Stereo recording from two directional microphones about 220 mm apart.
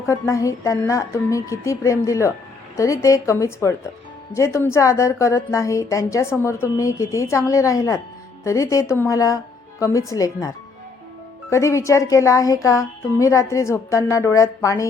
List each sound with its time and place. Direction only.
0.1 s speech: 15° left (ahead or behind)